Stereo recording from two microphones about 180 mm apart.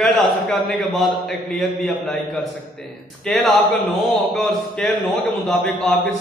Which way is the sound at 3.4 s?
Centre (ahead or behind).